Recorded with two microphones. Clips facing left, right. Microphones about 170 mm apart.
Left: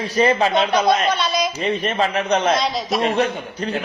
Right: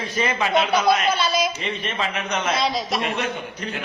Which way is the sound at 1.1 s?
Centre (ahead or behind).